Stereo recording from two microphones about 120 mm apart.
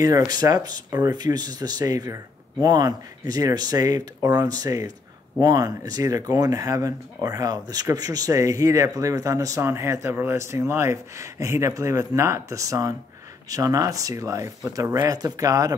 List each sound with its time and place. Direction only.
0.3 s speech: 35° right (ahead or behind)